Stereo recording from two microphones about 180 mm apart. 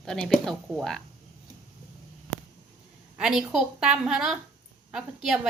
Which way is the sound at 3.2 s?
5° right (ahead or behind).